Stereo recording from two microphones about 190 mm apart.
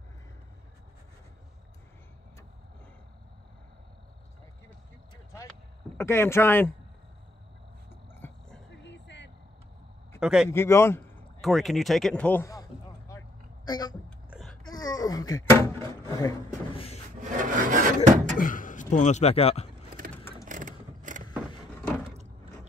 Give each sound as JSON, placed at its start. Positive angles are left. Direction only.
{"t": 5.1, "sound": "a sound", "side_deg": 15}
{"t": 5.9, "sound": "speech", "side_deg": 10}
{"t": 7.9, "sound": "a sound", "side_deg": 10}
{"t": 8.8, "sound": "vehicle", "side_deg": 70}
{"t": 10.2, "sound": "speech", "side_deg": -5}
{"t": 10.5, "sound": "a man's voice", "side_deg": 15}
{"t": 11.4, "sound": "speech", "side_deg": 0}
{"t": 13.7, "sound": "speech", "side_deg": 20}
{"t": 14.3, "sound": "a sound", "side_deg": 0}
{"t": 14.6, "sound": "a sound", "side_deg": 20}
{"t": 16.7, "sound": "wood", "side_deg": 30}
{"t": 17.2, "sound": "wood", "side_deg": -40}
{"t": 18.4, "sound": "vehicle", "side_deg": 45}
{"t": 20.4, "sound": "vehicle", "side_deg": -45}